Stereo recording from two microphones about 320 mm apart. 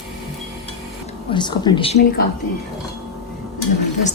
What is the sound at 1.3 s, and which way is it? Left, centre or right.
Speech, centre.